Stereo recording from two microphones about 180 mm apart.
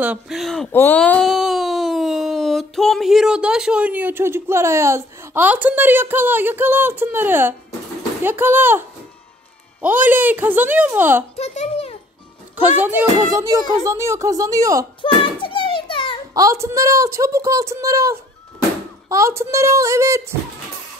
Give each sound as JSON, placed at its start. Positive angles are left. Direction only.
{"t": 0.0, "sound": "speech", "side_deg": -5}
{"t": 0.7, "sound": "speech", "side_deg": 10}
{"t": 11.3, "sound": "a child's voice", "side_deg": 35}
{"t": 12.8, "sound": "speech", "side_deg": -15}
{"t": 15.0, "sound": "a sound", "side_deg": 30}
{"t": 16.3, "sound": "speech", "side_deg": -15}